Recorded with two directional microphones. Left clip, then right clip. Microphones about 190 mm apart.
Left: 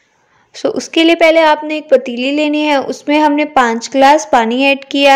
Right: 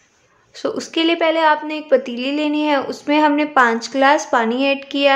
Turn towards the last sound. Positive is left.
turn(degrees=30)  # may be behind; listen again after turning